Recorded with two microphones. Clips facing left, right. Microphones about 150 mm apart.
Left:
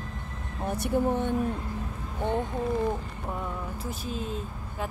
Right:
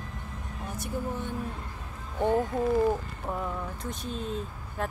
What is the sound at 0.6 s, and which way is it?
Speech, 65° left (ahead or behind).